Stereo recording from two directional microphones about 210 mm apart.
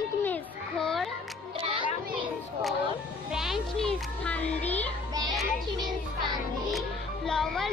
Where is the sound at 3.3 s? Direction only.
Centre (ahead or behind).